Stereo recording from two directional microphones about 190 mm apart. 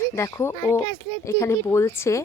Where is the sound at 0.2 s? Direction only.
15° left (ahead or behind).